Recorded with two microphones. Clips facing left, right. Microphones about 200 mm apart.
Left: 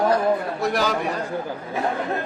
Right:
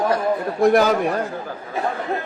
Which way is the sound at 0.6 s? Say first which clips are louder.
Right 11 dB; 50° right (ahead or behind).